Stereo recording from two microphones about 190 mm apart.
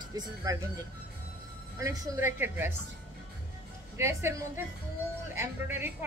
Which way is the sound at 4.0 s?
15° right (ahead or behind).